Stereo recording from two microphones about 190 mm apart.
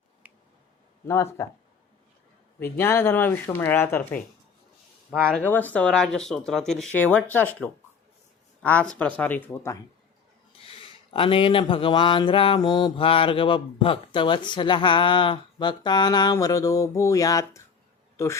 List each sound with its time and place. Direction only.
1.0 s speech: 15° left (ahead or behind)
2.6 s speech: 10° left (ahead or behind)
5.2 s speech: 5° left (ahead or behind)
10.7 s speech: 30° left (ahead or behind)